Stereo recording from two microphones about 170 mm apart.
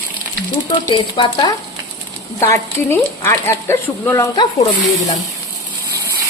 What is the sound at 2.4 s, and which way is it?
Speech, 15° left (ahead or behind).